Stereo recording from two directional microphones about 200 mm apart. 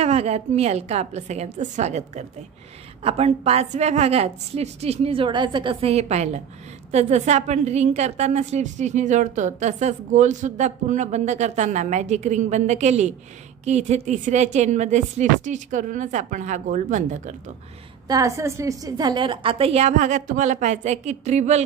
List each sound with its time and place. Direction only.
0.0 s a woman's voice: 30° right (ahead or behind)
18.0 s a woman's voice: 15° right (ahead or behind); by 21.6 s 35° right (ahead or behind)